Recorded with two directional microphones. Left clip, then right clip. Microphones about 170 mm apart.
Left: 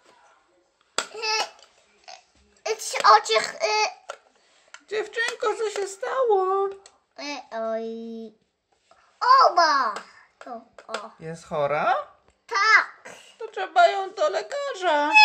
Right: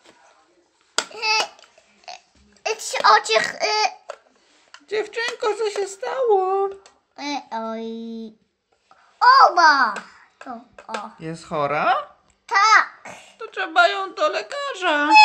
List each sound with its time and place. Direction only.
0.9 s babbling: 35° right (ahead or behind)
2.6 s a child's voice: 20° right (ahead or behind)
4.8 s speech: centre (ahead or behind)
7.2 s a child's voice: 25° right (ahead or behind)
10.8 s speech: centre (ahead or behind)
12.4 s babbling: 30° right (ahead or behind)
13.4 s speech: centre (ahead or behind)